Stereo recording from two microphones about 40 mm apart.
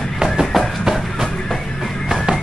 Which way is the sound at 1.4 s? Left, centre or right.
Centre.